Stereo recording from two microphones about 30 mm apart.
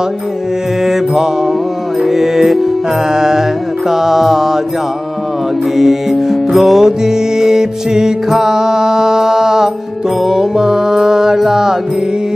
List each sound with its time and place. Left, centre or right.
0.8 s mantra: centre
2.0 s music: centre
3.1 s music: centre
5.8 s music: centre
6.8 s music: centre